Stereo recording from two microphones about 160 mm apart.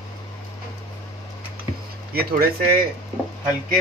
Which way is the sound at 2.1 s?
70° right (ahead or behind).